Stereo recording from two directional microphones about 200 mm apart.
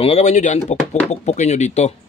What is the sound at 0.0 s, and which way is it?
Speech, 35° left (ahead or behind).